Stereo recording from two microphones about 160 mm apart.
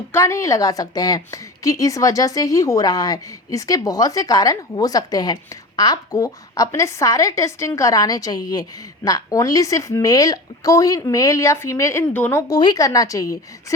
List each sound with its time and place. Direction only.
0.1 s a woman's voice: 20° left (ahead or behind)